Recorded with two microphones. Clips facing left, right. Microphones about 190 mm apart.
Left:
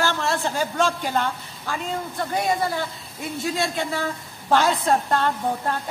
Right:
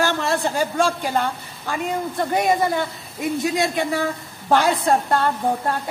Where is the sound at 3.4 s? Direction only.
15° right (ahead or behind).